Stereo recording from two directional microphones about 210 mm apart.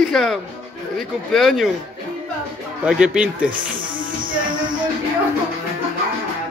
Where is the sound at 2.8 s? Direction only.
5° right (ahead or behind).